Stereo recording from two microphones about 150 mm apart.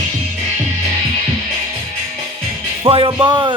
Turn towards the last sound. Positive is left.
turn(degrees=-30)  # may be behind; listen again after turning